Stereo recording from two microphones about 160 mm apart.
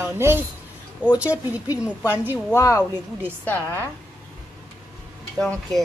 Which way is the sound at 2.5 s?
20° left (ahead or behind).